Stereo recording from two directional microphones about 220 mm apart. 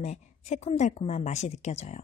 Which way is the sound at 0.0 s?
30° left (ahead or behind).